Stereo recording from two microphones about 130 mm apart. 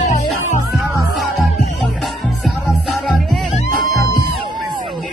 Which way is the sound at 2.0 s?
Centre (ahead or behind).